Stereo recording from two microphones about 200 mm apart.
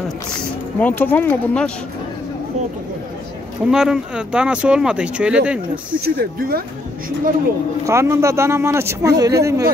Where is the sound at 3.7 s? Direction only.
5° right (ahead or behind).